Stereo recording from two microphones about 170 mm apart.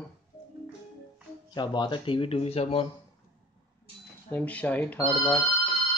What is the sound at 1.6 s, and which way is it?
Speech, 25° left (ahead or behind).